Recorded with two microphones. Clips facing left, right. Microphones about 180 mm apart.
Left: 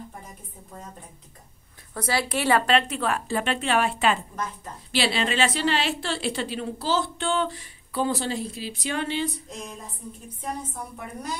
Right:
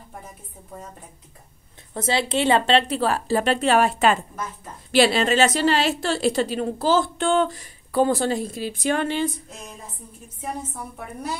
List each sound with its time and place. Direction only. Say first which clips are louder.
2.0 s a woman's voice: right 4 dB; 25° right (ahead or behind); by 9.3 s 50° right (ahead or behind)